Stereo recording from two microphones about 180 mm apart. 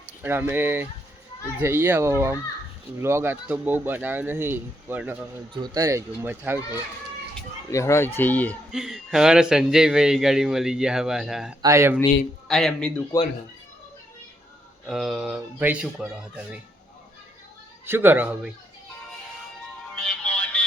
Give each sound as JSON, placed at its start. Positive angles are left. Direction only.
{"t": 0.2, "sound": "speech", "side_deg": -10}
{"t": 5.5, "sound": "speech", "side_deg": -20}
{"t": 7.7, "sound": "speech", "side_deg": 15}
{"t": 8.7, "sound": "speech", "side_deg": 0}
{"t": 11.6, "sound": "speech", "side_deg": -15}
{"t": 12.5, "sound": "speech", "side_deg": 0}
{"t": 13.1, "sound": "speech", "side_deg": 15}
{"t": 14.8, "sound": "speech", "side_deg": 0}
{"t": 17.8, "sound": "speech", "side_deg": -10}
{"t": 20.0, "sound": "music", "side_deg": 5}